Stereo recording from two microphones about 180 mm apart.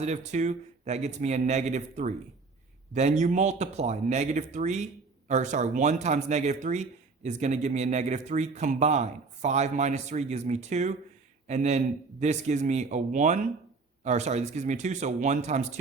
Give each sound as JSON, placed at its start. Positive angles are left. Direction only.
{"t": 0.0, "sound": "speech", "side_deg": -40}